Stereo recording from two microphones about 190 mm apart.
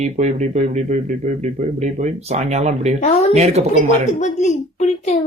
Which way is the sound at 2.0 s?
35° right (ahead or behind).